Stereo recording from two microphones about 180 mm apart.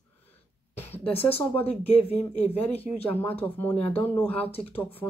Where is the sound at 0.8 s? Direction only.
10° left (ahead or behind).